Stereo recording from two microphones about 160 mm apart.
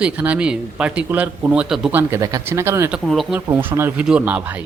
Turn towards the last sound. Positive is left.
turn(degrees=-10)  # may be behind; listen again after turning